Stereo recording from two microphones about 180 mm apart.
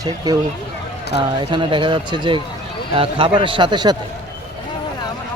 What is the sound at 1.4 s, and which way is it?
Speech, 25° right (ahead or behind).